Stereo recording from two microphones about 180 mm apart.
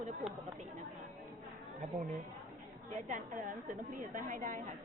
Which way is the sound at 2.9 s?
45° right (ahead or behind).